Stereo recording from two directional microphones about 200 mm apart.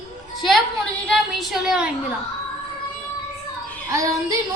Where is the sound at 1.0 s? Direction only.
Centre (ahead or behind).